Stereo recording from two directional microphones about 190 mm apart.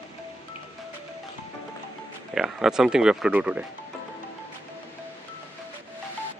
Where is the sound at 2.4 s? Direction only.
5° right (ahead or behind).